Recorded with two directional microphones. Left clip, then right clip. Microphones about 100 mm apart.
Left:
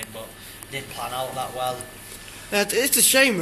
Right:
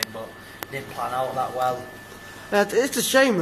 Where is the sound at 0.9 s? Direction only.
5° right (ahead or behind).